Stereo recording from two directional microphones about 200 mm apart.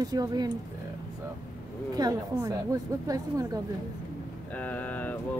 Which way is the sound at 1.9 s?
20° right (ahead or behind).